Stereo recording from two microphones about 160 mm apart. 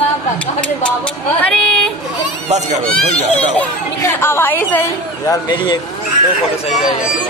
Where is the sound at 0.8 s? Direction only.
5° left (ahead or behind).